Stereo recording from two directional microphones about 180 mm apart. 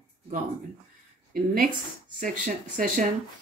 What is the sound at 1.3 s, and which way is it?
Speech, 50° right (ahead or behind).